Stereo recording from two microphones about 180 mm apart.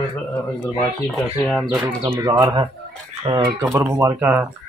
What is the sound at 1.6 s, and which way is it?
Speech, 10° right (ahead or behind).